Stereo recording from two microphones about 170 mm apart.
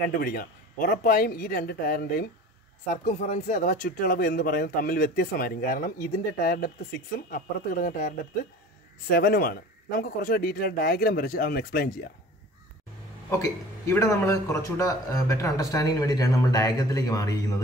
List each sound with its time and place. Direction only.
0.2 s speech: 60° left (ahead or behind)
3.0 s speech: 50° left (ahead or behind)
9.1 s speech: 60° left (ahead or behind)
13.4 s a man's voice: 20° left (ahead or behind)